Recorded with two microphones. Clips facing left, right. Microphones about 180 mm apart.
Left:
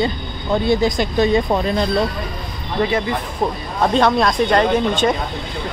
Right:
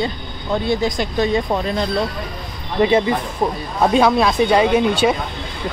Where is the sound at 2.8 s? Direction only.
25° right (ahead or behind).